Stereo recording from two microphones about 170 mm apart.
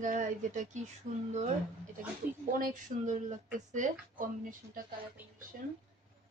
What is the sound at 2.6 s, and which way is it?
Speech, 50° right (ahead or behind).